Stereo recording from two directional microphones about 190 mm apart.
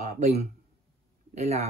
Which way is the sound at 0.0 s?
35° right (ahead or behind).